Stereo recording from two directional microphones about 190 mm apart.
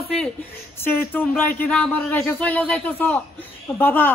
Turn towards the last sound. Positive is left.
turn(degrees=10)  # may be behind; listen again after turning